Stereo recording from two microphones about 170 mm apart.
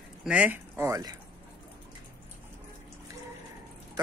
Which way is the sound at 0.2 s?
5° right (ahead or behind).